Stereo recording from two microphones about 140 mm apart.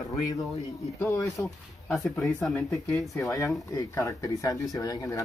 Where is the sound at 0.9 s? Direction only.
20° left (ahead or behind).